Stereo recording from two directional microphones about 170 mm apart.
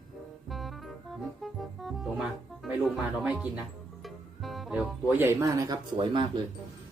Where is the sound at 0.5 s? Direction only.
Centre (ahead or behind).